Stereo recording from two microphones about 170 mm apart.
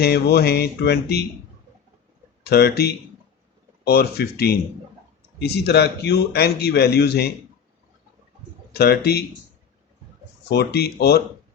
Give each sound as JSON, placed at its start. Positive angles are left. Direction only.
{"t": 0.0, "sound": "a man's voice", "side_deg": 70}
{"t": 2.4, "sound": "a man's voice", "side_deg": 70}
{"t": 8.7, "sound": "a man's voice", "side_deg": 70}
{"t": 10.5, "sound": "a man's voice", "side_deg": 70}